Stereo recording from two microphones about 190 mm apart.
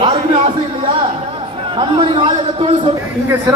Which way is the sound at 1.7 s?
30° right (ahead or behind).